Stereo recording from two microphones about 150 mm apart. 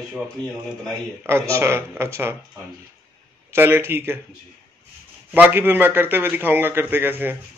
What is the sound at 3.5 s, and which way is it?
Speech, 15° right (ahead or behind).